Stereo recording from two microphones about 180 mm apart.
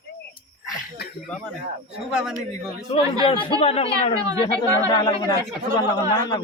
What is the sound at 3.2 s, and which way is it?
Speech, 30° left (ahead or behind).